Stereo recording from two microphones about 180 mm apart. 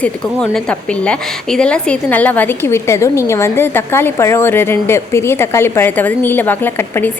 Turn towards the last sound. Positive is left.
turn(degrees=10)  # may be behind; listen again after turning